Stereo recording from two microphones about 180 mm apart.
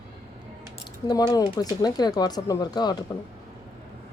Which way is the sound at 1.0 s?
20° left (ahead or behind).